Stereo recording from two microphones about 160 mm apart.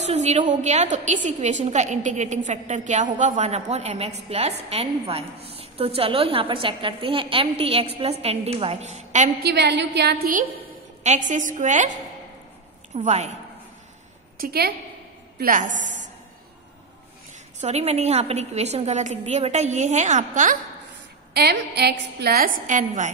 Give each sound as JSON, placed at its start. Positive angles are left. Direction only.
{"t": 0.0, "sound": "a woman's voice", "side_deg": -45}
{"t": 9.4, "sound": "a woman's voice", "side_deg": -90}
{"t": 11.1, "sound": "a woman's voice", "side_deg": -50}
{"t": 14.4, "sound": "a woman's voice", "side_deg": -75}
{"t": 15.3, "sound": "a woman's voice", "side_deg": -60}
{"t": 17.6, "sound": "a woman's voice", "side_deg": -45}
{"t": 21.3, "sound": "a woman's voice", "side_deg": -85}
{"t": 22.7, "sound": "a woman's voice", "side_deg": -50}